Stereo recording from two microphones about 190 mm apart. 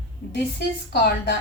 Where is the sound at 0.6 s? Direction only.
60° left (ahead or behind).